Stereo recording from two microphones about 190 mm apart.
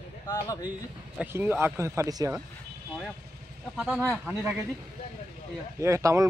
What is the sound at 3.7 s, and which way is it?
Speech, centre (ahead or behind).